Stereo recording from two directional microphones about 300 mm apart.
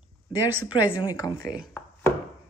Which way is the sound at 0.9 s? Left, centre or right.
Centre.